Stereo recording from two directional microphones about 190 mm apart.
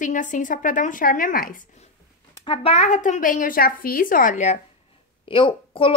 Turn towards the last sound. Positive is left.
turn(degrees=25)  # may be behind; listen again after turning